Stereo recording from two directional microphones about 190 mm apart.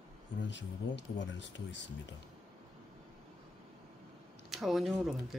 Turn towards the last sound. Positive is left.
turn(degrees=0)  # may be behind; listen again after turning